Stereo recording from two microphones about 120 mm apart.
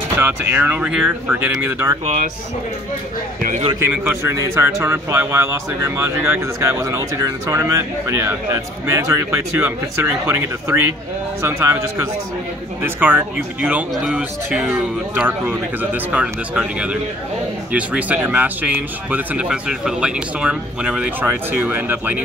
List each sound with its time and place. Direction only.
0.2 s speech: 15° right (ahead or behind)
2.0 s speech: 90° right
3.8 s speech: 20° right (ahead or behind)